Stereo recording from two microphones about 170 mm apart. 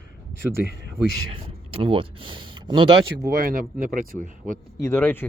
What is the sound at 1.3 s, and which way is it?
Speech, 30° right (ahead or behind).